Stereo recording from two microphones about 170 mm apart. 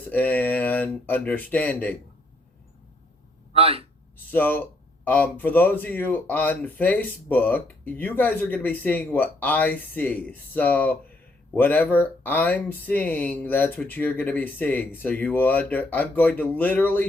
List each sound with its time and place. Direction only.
0.0 s speech: 10° left (ahead or behind)
3.5 s a sound: 35° right (ahead or behind)
4.3 s speech: 10° left (ahead or behind)